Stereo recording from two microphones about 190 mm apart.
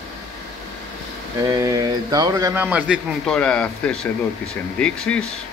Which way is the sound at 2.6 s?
5° right (ahead or behind).